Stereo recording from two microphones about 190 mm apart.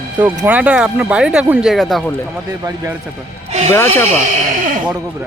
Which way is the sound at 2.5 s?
15° right (ahead or behind).